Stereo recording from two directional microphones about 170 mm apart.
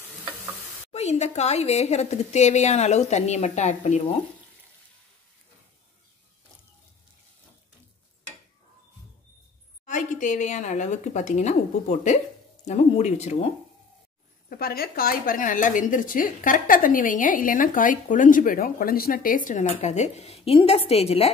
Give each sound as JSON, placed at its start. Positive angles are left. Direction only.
{"t": 0.9, "sound": "a woman's voice", "side_deg": 40}
{"t": 9.8, "sound": "a woman's voice", "side_deg": 50}
{"t": 14.5, "sound": "a woman's voice", "side_deg": 60}